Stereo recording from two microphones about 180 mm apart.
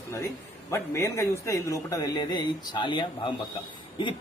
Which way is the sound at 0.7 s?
15° left (ahead or behind).